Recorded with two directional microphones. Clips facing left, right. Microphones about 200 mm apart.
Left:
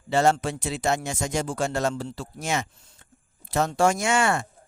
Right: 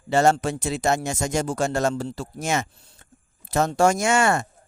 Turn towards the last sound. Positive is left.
turn(degrees=-45)  # may be behind; listen again after turning